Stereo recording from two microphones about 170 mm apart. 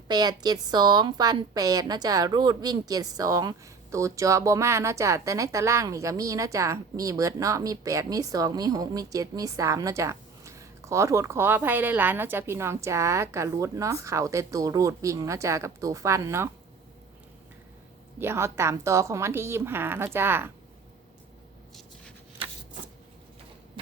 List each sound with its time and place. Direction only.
0.1 s a woman's voice: 25° right (ahead or behind)
18.2 s a woman's voice: 15° right (ahead or behind)
23.8 s thump: 30° right (ahead or behind)